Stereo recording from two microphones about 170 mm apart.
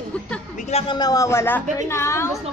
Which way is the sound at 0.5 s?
45° left (ahead or behind).